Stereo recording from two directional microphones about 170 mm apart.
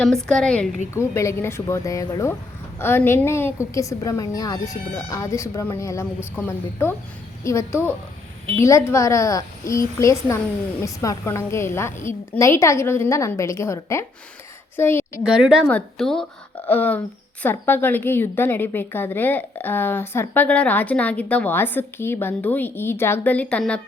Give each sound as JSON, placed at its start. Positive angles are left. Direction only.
{"t": 0.3, "sound": "a woman's voice", "side_deg": 5}
{"t": 0.9, "sound": "a woman's voice", "side_deg": 15}
{"t": 15.3, "sound": "a woman's voice", "side_deg": -5}
{"t": 15.6, "sound": "a woman's voice", "side_deg": 5}